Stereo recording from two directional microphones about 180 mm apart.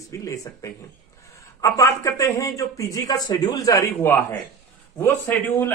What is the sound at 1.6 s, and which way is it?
Speech, 15° left (ahead or behind).